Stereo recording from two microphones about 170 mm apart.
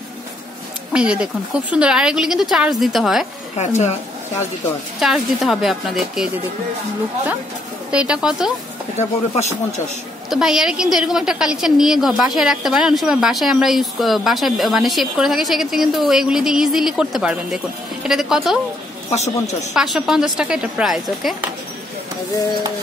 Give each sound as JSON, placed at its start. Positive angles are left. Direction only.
{"t": 0.9, "sound": "a woman's voice", "side_deg": -5}
{"t": 3.5, "sound": "speech", "side_deg": 40}
{"t": 5.0, "sound": "a woman's voice", "side_deg": 0}
{"t": 7.9, "sound": "a woman's voice", "side_deg": -5}
{"t": 8.9, "sound": "speech", "side_deg": 40}
{"t": 10.3, "sound": "a woman's voice", "side_deg": -5}
{"t": 19.0, "sound": "a man's voice", "side_deg": 40}
{"t": 19.7, "sound": "a woman's voice", "side_deg": 0}